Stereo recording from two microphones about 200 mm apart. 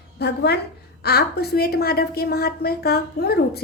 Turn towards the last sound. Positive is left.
turn(degrees=50)  # may be behind; listen again after turning